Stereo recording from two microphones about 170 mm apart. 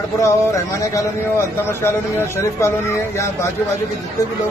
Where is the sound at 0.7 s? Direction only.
15° left (ahead or behind).